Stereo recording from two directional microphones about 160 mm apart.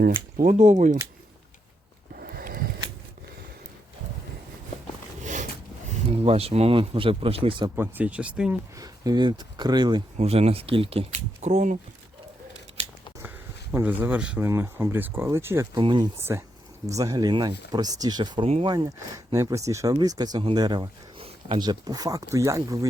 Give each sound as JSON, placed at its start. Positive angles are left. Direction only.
{"t": 0.3, "sound": "speech", "side_deg": -55}
{"t": 2.2, "sound": "a sound", "side_deg": -65}
{"t": 5.2, "sound": "a sound", "side_deg": -50}
{"t": 6.2, "sound": "speech", "side_deg": -40}
{"t": 7.8, "sound": "speech", "side_deg": -10}
{"t": 8.7, "sound": "speech", "side_deg": -20}
{"t": 10.2, "sound": "speech", "side_deg": -40}
{"t": 13.2, "sound": "speech", "side_deg": -10}
{"t": 15.8, "sound": "speech", "side_deg": -30}
{"t": 16.3, "sound": "speech", "side_deg": -20}